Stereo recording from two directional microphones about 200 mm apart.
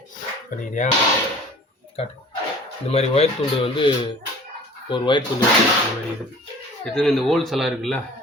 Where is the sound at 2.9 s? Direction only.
30° left (ahead or behind).